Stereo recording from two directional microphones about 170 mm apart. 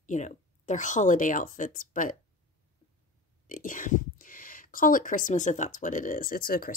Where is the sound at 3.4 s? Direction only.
55° left (ahead or behind).